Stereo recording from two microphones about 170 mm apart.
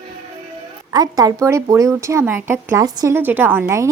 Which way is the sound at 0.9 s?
20° right (ahead or behind).